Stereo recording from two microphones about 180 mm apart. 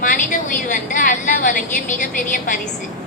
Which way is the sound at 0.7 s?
45° left (ahead or behind).